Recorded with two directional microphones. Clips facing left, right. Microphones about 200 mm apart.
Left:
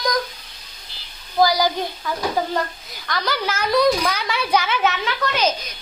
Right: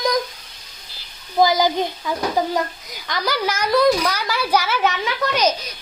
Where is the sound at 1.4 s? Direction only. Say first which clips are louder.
Right 1 dB; 20° right (ahead or behind).